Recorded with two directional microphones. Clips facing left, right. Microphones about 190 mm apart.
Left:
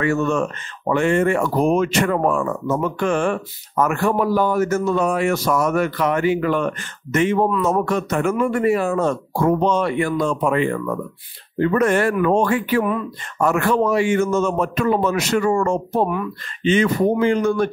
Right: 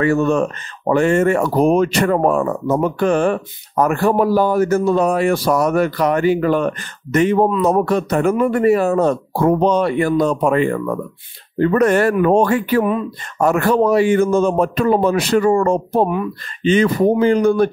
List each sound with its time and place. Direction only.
0.0 s speech: 35° right (ahead or behind)